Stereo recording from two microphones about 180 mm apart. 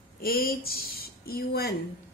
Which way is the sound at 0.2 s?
55° left (ahead or behind).